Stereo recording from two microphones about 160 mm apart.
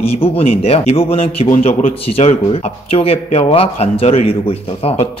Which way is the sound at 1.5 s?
50° left (ahead or behind).